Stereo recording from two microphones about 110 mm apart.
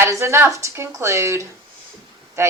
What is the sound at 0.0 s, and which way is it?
Speech, 25° right (ahead or behind).